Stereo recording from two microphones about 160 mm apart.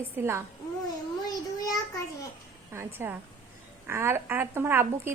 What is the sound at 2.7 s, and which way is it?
A woman's voice, 15° right (ahead or behind).